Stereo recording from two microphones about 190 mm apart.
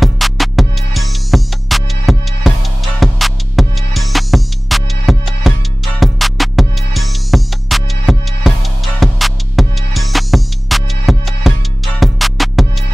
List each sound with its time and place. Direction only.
0.0 s music: centre (ahead or behind)